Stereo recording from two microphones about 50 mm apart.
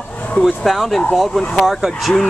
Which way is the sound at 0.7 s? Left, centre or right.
Centre.